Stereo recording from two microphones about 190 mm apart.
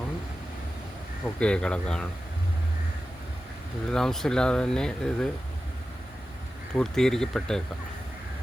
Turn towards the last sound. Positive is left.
turn(degrees=0)  # may be behind; listen again after turning